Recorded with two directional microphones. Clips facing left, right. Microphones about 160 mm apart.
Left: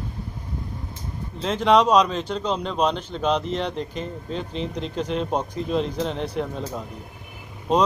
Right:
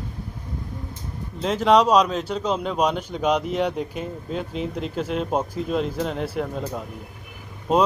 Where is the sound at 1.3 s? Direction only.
5° right (ahead or behind).